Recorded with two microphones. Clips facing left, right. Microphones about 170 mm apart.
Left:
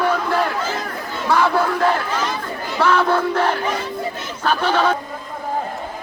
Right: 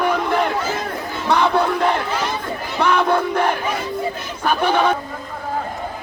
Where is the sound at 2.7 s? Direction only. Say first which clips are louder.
Even; 15° right (ahead or behind).